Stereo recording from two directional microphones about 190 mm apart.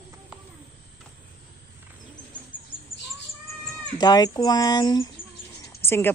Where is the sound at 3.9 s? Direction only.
20° left (ahead or behind).